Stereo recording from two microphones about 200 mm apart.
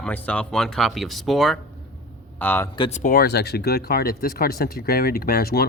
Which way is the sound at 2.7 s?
25° left (ahead or behind).